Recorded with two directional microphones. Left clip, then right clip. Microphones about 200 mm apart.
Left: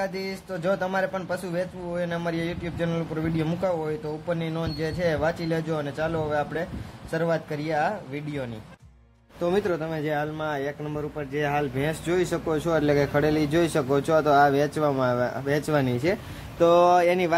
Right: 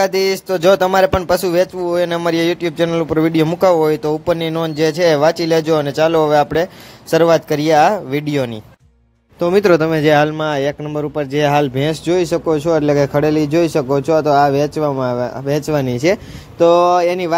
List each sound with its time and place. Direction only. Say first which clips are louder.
0.0 s speech: right 15 dB; 40° right (ahead or behind)
12.1 s a man's voice: right 10 dB; 25° right (ahead or behind)